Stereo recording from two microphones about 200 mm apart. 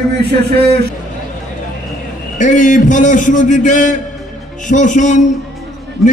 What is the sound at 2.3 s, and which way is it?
A man's voice, 40° left (ahead or behind).